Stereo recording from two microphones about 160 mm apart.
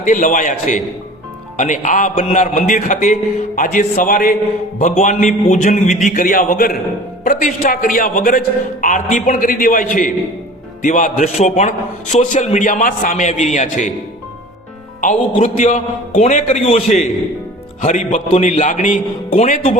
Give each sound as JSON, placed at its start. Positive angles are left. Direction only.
{"t": 0.0, "sound": "a man's voice", "side_deg": 55}
{"t": 4.8, "sound": "a man's voice", "side_deg": 50}
{"t": 15.0, "sound": "a man's voice", "side_deg": 50}